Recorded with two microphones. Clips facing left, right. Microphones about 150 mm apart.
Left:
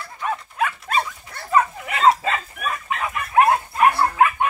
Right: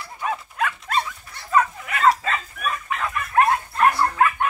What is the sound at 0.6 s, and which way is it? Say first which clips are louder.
Dog: left 1 dB; 10° left (ahead or behind).